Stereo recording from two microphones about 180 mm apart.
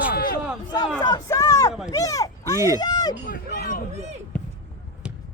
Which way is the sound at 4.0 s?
40° right (ahead or behind).